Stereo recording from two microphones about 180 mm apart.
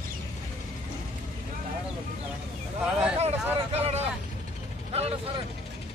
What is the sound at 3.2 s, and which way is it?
Speech, 35° right (ahead or behind).